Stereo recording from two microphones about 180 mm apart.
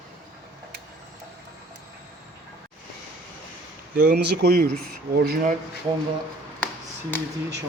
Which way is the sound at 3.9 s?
60° right (ahead or behind).